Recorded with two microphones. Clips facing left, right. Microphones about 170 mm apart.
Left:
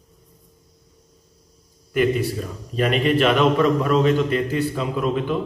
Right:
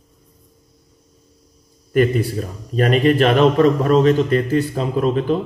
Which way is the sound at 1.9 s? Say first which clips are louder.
Right 3 dB; 45° right (ahead or behind).